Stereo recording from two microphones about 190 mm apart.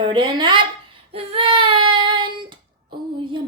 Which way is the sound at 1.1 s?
30° right (ahead or behind).